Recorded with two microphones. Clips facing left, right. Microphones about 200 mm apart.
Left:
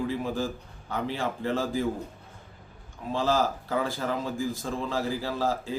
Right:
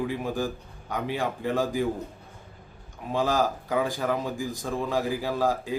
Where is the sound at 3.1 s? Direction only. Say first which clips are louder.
Right 1 dB; 15° right (ahead or behind).